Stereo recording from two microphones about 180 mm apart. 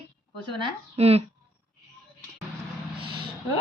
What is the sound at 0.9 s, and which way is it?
Speech, 35° right (ahead or behind).